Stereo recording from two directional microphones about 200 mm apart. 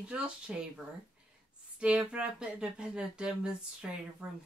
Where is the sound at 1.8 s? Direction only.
5° right (ahead or behind).